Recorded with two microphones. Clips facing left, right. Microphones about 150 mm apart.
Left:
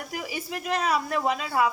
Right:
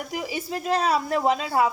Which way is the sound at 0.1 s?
25° right (ahead or behind).